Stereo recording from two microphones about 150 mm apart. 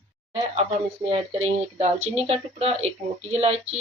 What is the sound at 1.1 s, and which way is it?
Speech, 45° right (ahead or behind).